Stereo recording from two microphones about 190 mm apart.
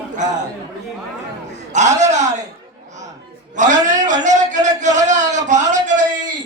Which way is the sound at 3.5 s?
40° right (ahead or behind).